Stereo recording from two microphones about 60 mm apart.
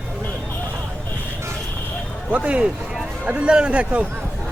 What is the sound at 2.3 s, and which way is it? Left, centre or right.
A man's voice, right.